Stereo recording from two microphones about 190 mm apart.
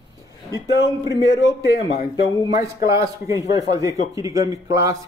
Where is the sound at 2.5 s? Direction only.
15° right (ahead or behind).